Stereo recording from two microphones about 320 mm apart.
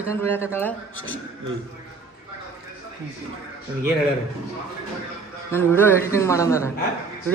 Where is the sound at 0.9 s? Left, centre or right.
Left.